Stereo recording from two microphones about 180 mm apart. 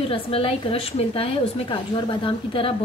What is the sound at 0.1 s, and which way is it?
A woman's voice, 30° left (ahead or behind).